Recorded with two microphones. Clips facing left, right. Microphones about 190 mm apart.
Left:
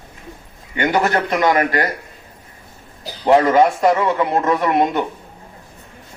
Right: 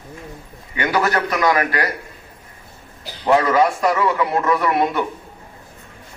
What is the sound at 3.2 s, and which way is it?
A man's voice, 25° left (ahead or behind).